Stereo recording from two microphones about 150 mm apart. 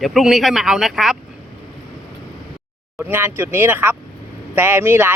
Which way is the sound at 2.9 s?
15° right (ahead or behind).